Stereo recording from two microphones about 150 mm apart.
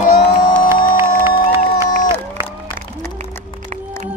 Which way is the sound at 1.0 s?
15° right (ahead or behind).